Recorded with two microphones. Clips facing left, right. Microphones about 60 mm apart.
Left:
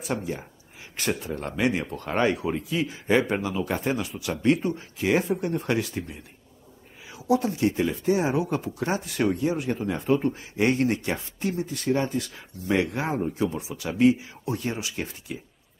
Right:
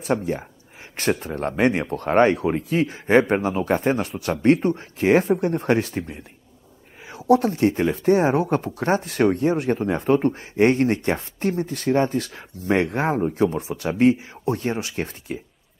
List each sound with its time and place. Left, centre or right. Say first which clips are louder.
0.2 s speech: right 6 dB; right
13.2 s speech: right 6 dB; right